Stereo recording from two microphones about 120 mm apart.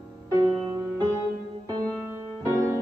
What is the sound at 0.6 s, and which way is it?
Music, 25° right (ahead or behind).